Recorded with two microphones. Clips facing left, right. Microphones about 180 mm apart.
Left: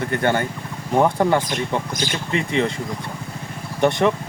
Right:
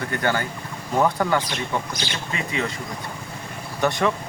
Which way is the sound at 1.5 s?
50° left (ahead or behind).